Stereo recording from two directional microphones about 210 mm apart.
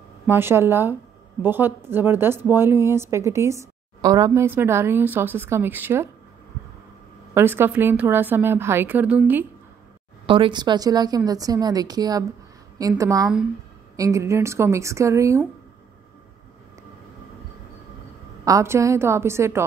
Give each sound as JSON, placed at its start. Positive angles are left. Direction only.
{"t": 0.3, "sound": "a woman's voice", "side_deg": -10}
{"t": 7.3, "sound": "a woman's voice", "side_deg": -10}
{"t": 10.2, "sound": "a woman's voice", "side_deg": -25}
{"t": 18.4, "sound": "a woman's voice", "side_deg": -15}